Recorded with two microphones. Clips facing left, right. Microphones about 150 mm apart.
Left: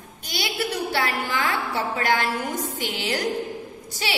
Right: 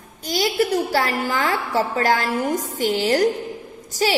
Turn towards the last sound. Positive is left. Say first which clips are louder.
# right 8 dB
turn(degrees=-40)  # may be behind; listen again after turning